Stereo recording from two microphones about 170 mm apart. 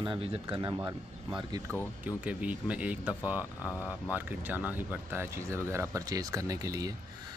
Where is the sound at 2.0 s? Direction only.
10° right (ahead or behind).